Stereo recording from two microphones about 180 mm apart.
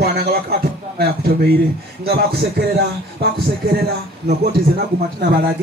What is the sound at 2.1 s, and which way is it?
A man's voice, 60° right (ahead or behind).